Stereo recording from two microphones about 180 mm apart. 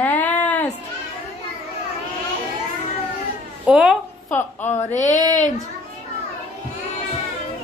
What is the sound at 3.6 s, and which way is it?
Speech, 5° right (ahead or behind).